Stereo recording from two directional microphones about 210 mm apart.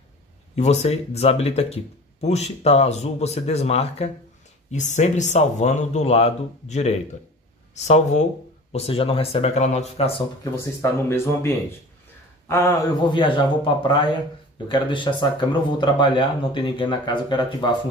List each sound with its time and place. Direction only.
0.6 s speech: 30° left (ahead or behind)
10.4 s speech: 15° left (ahead or behind)
13.8 s speech: 25° left (ahead or behind)